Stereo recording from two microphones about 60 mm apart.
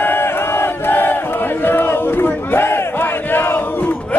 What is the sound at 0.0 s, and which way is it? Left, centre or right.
Battle cry, left.